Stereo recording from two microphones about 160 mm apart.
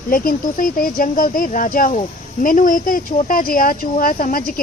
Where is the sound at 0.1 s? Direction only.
60° left (ahead or behind).